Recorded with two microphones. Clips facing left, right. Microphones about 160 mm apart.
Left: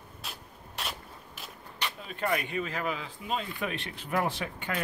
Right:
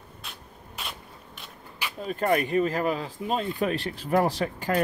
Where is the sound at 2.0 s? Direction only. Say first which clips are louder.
Right 8 dB; 45° right (ahead or behind).